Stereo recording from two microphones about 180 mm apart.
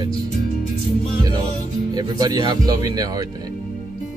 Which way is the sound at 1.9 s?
20° right (ahead or behind).